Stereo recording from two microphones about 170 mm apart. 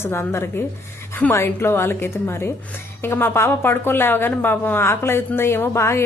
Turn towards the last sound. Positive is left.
turn(degrees=15)  # may be behind; listen again after turning